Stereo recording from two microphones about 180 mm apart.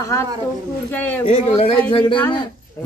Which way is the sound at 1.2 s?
30° left (ahead or behind).